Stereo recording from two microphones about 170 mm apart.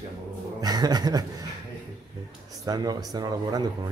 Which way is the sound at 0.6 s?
25° right (ahead or behind).